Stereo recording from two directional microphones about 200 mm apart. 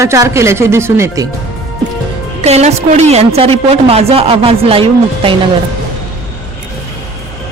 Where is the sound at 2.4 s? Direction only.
35° right (ahead or behind).